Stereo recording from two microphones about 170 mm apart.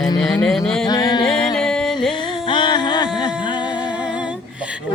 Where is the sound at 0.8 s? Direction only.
25° left (ahead or behind).